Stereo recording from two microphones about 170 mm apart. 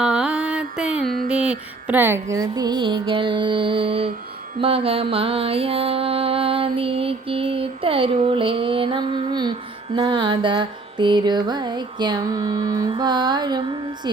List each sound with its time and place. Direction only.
0.0 s music: 5° right (ahead or behind)
1.3 s mantra: 5° right (ahead or behind); by 14.1 s 25° right (ahead or behind)